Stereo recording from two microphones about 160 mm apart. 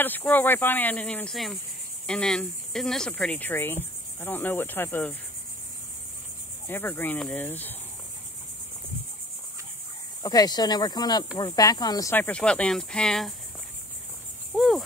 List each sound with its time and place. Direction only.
0.0 s speech: 10° left (ahead or behind)
6.7 s speech: 10° left (ahead or behind)
10.2 s speech: 25° left (ahead or behind); by 13.3 s 5° left (ahead or behind)
14.5 s cricket: centre (ahead or behind)